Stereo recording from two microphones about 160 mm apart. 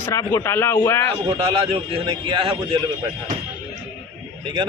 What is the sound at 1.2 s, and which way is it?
A man's voice, 35° right (ahead or behind).